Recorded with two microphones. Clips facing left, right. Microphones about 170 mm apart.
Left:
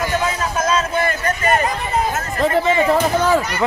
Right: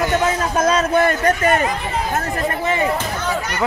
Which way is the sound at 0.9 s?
55° right (ahead or behind).